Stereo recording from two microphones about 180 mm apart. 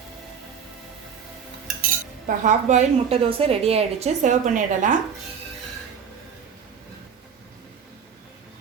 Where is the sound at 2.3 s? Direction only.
40° right (ahead or behind).